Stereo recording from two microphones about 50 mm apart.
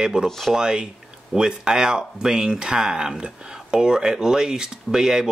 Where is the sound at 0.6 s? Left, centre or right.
Centre.